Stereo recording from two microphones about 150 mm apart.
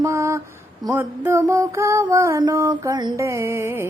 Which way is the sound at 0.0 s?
20° right (ahead or behind).